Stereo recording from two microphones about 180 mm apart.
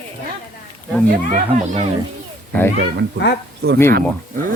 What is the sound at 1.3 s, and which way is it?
Speech, 45° right (ahead or behind).